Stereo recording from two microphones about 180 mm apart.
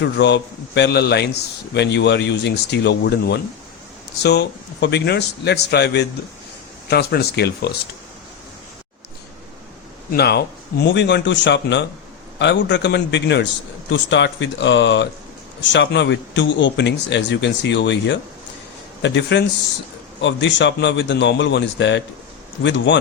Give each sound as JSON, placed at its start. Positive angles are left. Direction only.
{"t": 0.0, "sound": "a man's voice", "side_deg": 75}
{"t": 10.1, "sound": "a man's voice", "side_deg": 65}
{"t": 13.9, "sound": "a man's voice", "side_deg": 90}